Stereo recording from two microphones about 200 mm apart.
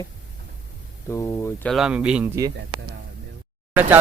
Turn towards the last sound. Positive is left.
turn(degrees=-10)  # may be behind; listen again after turning